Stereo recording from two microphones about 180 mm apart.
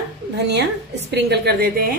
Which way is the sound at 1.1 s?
65° right (ahead or behind).